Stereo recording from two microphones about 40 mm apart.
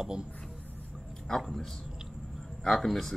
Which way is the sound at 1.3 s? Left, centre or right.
Centre.